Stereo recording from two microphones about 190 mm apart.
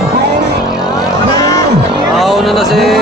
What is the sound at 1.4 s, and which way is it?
Music, 20° left (ahead or behind).